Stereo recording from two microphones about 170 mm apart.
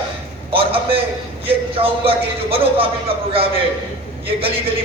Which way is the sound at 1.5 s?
35° right (ahead or behind).